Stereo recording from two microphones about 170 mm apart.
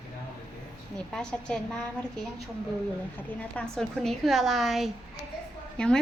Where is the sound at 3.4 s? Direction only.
5° left (ahead or behind).